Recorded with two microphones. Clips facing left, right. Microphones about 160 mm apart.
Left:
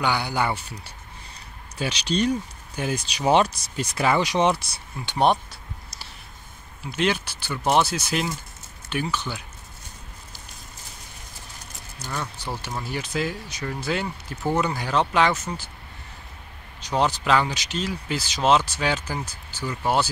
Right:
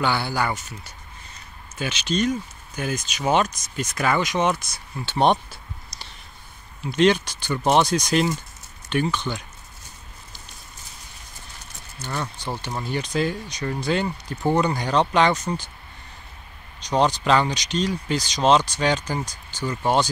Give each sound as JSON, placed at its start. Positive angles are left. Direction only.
{"t": 0.0, "sound": "speech", "side_deg": 15}
{"t": 5.0, "sound": "speech", "side_deg": 10}
{"t": 5.9, "sound": "a sound", "side_deg": 10}
{"t": 6.8, "sound": "speech", "side_deg": 5}
{"t": 12.4, "sound": "speech", "side_deg": 10}
{"t": 16.8, "sound": "speech", "side_deg": 5}